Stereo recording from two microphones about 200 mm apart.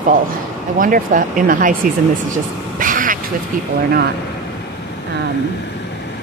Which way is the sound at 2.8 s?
40° right (ahead or behind).